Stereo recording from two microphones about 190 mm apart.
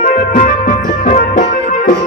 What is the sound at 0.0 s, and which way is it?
Music, 40° left (ahead or behind).